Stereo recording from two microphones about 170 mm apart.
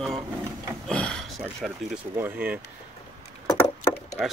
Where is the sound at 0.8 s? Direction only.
5° left (ahead or behind).